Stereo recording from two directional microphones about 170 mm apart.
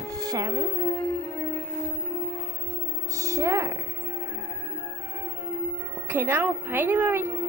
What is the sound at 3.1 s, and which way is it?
Music, 20° right (ahead or behind).